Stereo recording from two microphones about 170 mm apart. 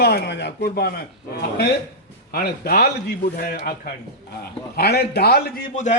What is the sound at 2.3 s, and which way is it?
Speech, 65° left (ahead or behind).